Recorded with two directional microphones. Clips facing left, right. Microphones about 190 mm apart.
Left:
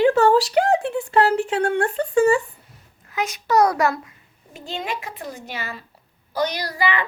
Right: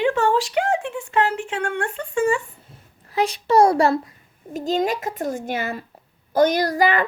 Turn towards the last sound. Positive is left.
turn(degrees=-45)  # may be behind; listen again after turning